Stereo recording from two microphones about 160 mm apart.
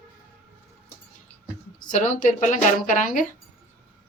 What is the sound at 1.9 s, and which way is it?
Speech, 50° left (ahead or behind).